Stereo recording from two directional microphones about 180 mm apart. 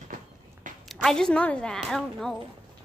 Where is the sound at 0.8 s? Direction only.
Centre (ahead or behind).